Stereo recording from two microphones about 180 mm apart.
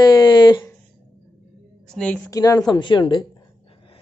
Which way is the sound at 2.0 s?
5° left (ahead or behind).